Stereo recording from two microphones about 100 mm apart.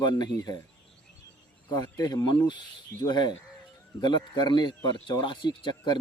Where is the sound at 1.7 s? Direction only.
35° left (ahead or behind).